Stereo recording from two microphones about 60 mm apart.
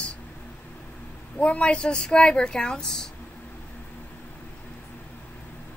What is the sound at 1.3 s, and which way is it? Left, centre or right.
Speech, left.